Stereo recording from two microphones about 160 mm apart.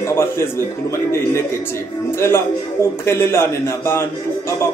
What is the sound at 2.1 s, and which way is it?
A man's voice, 15° left (ahead or behind).